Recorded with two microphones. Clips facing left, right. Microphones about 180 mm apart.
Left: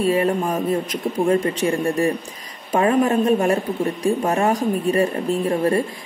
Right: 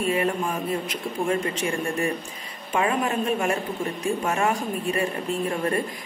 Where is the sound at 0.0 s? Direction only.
35° left (ahead or behind).